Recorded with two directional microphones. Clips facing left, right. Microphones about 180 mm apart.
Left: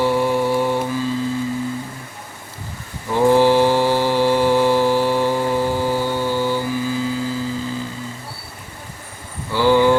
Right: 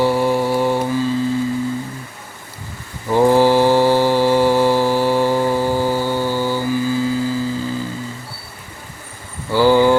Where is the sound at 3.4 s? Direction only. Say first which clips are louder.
Right 2 dB; 40° right (ahead or behind).